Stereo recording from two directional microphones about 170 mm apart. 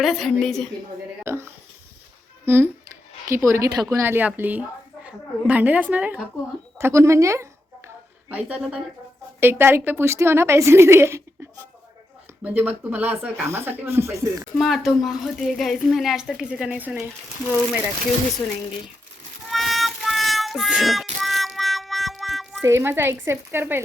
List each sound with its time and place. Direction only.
0.0 s speech: centre (ahead or behind)
1.2 s speech: 15° right (ahead or behind)
3.2 s speech: 15° right (ahead or behind)
12.4 s speech: 10° right (ahead or behind)
14.6 s speech: centre (ahead or behind)
19.5 s music: centre (ahead or behind)
22.6 s speech: 15° right (ahead or behind)